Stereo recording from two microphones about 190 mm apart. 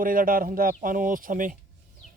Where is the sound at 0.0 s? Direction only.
45° right (ahead or behind).